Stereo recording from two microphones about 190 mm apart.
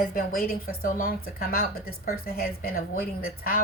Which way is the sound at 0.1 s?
50° left (ahead or behind).